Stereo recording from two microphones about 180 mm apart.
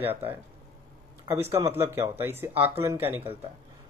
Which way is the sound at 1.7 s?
15° right (ahead or behind).